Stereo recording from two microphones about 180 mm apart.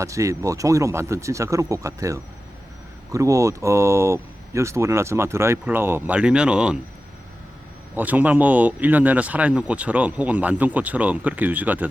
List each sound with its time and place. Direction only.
0.0 s a man's voice: 15° right (ahead or behind)
7.9 s a man's voice: 10° right (ahead or behind)